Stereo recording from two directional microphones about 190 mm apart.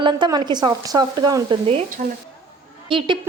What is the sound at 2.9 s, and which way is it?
Speech, 25° right (ahead or behind).